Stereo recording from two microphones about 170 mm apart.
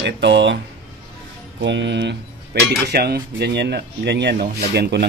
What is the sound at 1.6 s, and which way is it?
Music, 90° right.